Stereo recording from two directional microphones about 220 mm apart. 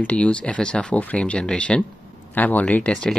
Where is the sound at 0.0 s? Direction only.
5° left (ahead or behind).